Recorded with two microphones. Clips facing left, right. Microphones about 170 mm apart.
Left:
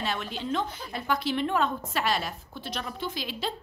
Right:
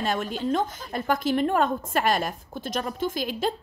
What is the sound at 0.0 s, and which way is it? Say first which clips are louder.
A woman's voice: right 5 dB; 45° right (ahead or behind).